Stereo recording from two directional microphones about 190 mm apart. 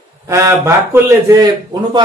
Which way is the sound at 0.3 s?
15° right (ahead or behind).